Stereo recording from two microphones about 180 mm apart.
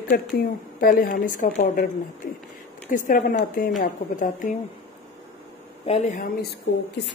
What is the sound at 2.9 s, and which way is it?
Speech, 50° left (ahead or behind).